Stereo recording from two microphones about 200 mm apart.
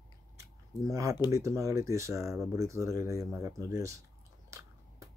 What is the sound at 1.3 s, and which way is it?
Speech, 15° right (ahead or behind).